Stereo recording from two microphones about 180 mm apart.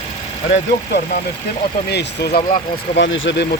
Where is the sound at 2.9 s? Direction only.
90° left.